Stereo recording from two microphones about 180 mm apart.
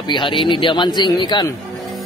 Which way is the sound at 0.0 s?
25° left (ahead or behind).